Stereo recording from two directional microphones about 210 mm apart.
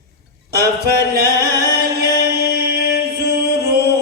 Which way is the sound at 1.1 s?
50° right (ahead or behind).